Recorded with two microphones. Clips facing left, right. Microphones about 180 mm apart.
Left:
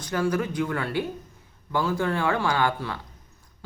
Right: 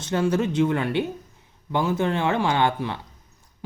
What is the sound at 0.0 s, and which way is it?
A man's voice, 25° right (ahead or behind).